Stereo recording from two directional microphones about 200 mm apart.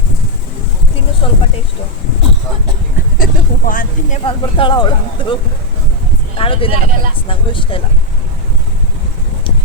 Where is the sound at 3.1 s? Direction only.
45° left (ahead or behind).